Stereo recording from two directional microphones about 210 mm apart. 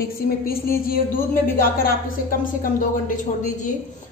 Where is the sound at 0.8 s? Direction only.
45° left (ahead or behind).